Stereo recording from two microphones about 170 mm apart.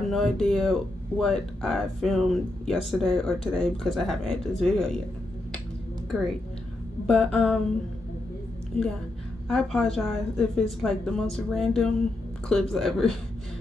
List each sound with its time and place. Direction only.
0.1 s speech: centre (ahead or behind)
6.1 s speech: 5° right (ahead or behind)
9.5 s speech: 5° left (ahead or behind)